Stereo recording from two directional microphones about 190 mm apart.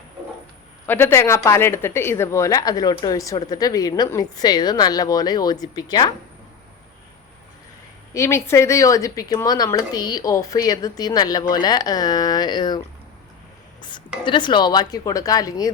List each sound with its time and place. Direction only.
0.9 s a woman's voice: 10° left (ahead or behind)
8.1 s speech: 15° left (ahead or behind)
13.8 s speech: 25° left (ahead or behind)